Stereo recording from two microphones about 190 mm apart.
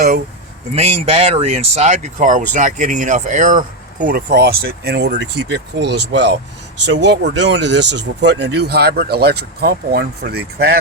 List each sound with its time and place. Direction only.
0.8 s speech: 35° right (ahead or behind); by 10.8 s 55° right (ahead or behind)